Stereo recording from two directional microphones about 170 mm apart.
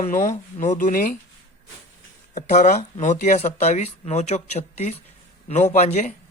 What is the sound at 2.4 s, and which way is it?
Speech, 45° left (ahead or behind).